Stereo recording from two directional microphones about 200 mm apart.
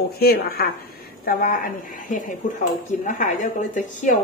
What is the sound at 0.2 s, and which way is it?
A woman's voice, 50° left (ahead or behind).